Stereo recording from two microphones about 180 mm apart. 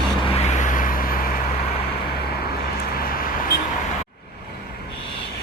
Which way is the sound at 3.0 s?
55° left (ahead or behind).